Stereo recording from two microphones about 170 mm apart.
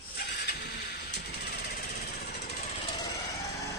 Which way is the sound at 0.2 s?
70° left (ahead or behind).